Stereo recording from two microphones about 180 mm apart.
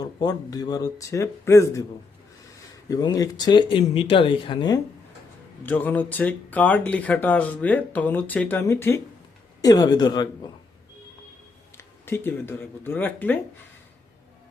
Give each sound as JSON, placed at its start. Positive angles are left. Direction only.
{"t": 0.0, "sound": "speech", "side_deg": 20}
{"t": 2.9, "sound": "speech", "side_deg": 20}
{"t": 5.6, "sound": "speech", "side_deg": 10}
{"t": 11.8, "sound": "speech", "side_deg": 15}